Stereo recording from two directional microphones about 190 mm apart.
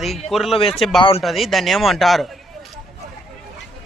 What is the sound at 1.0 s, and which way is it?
Speech, 30° left (ahead or behind).